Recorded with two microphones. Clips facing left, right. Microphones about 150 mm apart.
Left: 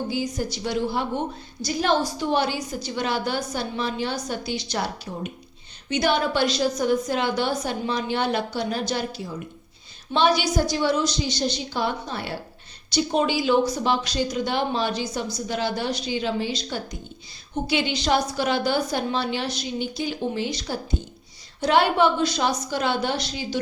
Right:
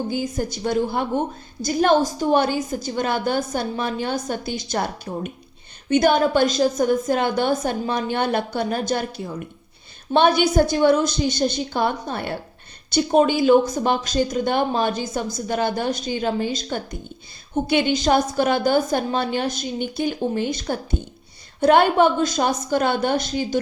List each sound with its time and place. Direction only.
0.1 s a woman's voice: 50° right (ahead or behind)